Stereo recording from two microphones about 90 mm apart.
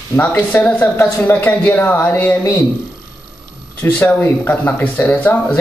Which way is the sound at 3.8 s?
20° left (ahead or behind).